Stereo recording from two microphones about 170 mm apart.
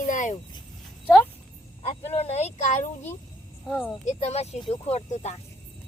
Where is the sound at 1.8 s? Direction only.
40° left (ahead or behind).